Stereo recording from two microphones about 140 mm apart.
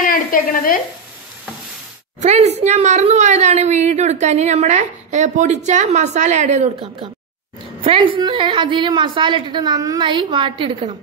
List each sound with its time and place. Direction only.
0.0 s stir: 80° left
2.1 s a woman's voice: 55° right (ahead or behind)
7.8 s a woman's voice: 40° right (ahead or behind)